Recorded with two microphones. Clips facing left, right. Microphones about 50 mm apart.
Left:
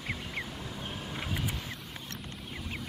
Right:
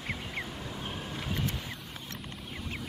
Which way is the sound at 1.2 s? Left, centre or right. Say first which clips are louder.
Right 1 dB; centre.